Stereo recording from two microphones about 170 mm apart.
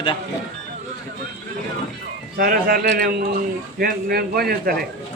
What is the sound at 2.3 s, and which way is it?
Speech, 60° right (ahead or behind).